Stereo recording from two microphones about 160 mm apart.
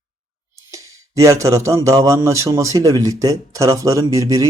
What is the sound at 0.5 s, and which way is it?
A man's voice, 20° right (ahead or behind).